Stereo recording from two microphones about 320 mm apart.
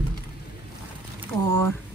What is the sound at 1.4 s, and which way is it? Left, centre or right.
Speech, right.